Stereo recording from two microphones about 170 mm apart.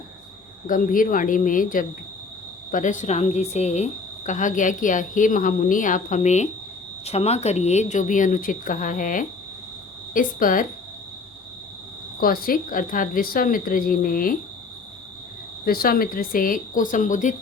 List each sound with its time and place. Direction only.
0.7 s a woman's voice: 55° left (ahead or behind)
12.2 s a woman's voice: 60° left (ahead or behind)
15.6 s a woman's voice: 60° left (ahead or behind)